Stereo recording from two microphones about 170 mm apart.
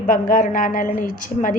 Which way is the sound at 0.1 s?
55° left (ahead or behind).